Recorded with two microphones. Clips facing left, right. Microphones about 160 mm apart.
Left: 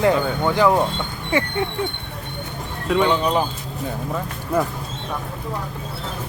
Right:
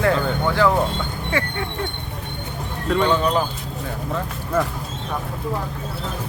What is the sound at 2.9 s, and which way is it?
Speech, 10° left (ahead or behind).